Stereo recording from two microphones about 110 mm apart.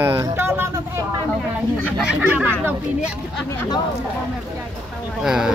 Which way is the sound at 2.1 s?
10° right (ahead or behind).